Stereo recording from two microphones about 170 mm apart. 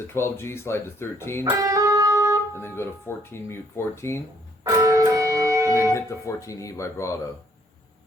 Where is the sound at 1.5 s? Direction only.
20° right (ahead or behind).